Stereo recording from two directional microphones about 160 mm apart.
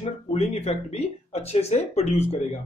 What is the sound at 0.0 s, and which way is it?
Speech, 40° left (ahead or behind).